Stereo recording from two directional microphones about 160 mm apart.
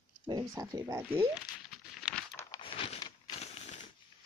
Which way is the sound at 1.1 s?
10° right (ahead or behind).